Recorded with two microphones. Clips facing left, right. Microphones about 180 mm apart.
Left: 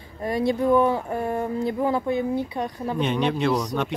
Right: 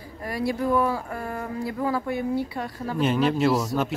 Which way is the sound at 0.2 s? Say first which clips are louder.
Left 4 dB; 20° left (ahead or behind).